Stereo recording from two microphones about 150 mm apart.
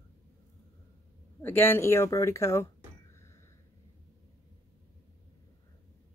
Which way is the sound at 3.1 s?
20° left (ahead or behind).